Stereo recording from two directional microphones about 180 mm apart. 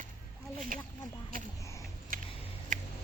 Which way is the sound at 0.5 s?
50° right (ahead or behind).